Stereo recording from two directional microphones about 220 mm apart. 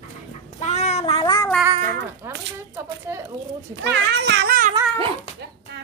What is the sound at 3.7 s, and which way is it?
A child's voice, 55° right (ahead or behind).